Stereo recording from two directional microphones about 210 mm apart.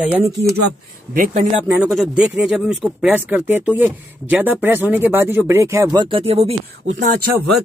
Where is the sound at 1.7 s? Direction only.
5° right (ahead or behind); by 6.5 s 30° right (ahead or behind).